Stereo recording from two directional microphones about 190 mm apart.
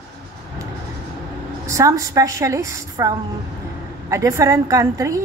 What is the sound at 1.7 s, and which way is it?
A woman's voice, 15° right (ahead or behind).